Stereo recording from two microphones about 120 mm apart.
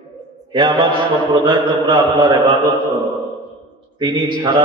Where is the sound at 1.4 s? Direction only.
40° right (ahead or behind).